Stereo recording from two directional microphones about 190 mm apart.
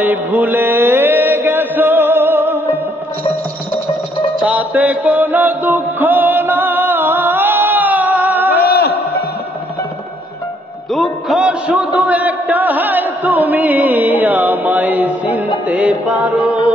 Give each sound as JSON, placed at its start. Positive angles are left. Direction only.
{"t": 0.0, "sound": "mantra", "side_deg": -10}
{"t": 4.4, "sound": "music", "side_deg": -5}
{"t": 8.6, "sound": "a sound", "side_deg": 55}
{"t": 10.9, "sound": "music", "side_deg": 0}